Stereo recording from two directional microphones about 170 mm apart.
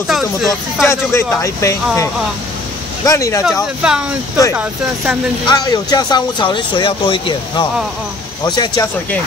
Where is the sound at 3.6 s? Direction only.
5° right (ahead or behind).